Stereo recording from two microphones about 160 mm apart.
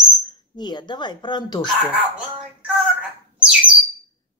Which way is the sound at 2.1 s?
5° right (ahead or behind).